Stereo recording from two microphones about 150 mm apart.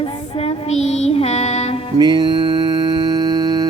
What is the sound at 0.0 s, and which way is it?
Music, 40° left (ahead or behind).